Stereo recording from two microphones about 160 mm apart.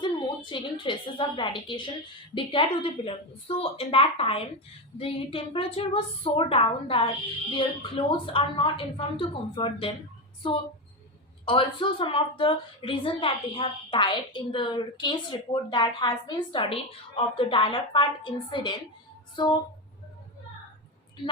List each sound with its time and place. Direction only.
0.0 s a woman's voice: 30° left (ahead or behind)